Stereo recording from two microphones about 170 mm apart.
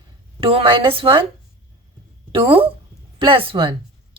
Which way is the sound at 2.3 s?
30° right (ahead or behind).